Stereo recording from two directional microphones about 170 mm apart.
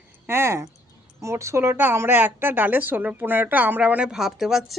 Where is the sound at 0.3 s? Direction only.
15° right (ahead or behind).